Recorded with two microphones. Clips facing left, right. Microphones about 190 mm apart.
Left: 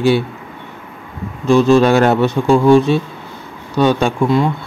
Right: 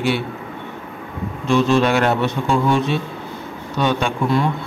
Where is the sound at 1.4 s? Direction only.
40° left (ahead or behind).